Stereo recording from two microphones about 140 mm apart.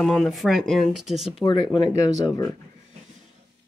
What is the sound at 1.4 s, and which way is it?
Speech, 35° left (ahead or behind).